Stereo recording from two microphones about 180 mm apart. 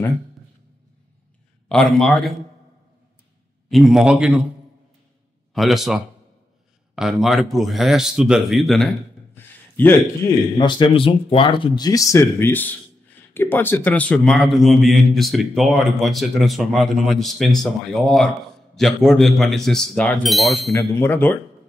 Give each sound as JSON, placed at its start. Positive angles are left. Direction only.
{"t": 1.7, "sound": "a man's voice", "side_deg": 5}
{"t": 3.6, "sound": "a man's voice", "side_deg": 0}
{"t": 5.5, "sound": "a man's voice", "side_deg": 0}
{"t": 9.3, "sound": "a sound", "side_deg": 10}
{"t": 10.2, "sound": "speech", "side_deg": 15}
{"t": 10.6, "sound": "a man's voice", "side_deg": 25}